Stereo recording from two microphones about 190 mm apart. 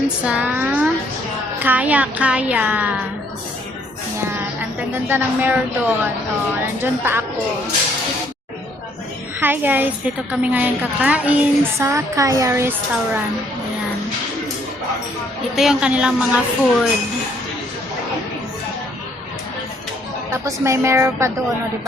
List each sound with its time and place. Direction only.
0.3 s a woman's voice: 10° right (ahead or behind)
5.0 s a woman's voice: 10° right (ahead or behind)
9.4 s a woman's voice: 10° right (ahead or behind)
15.5 s a woman's voice: 5° right (ahead or behind)
20.3 s a woman's voice: 15° right (ahead or behind)